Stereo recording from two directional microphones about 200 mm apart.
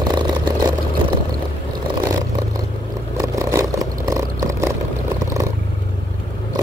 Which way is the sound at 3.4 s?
15° right (ahead or behind).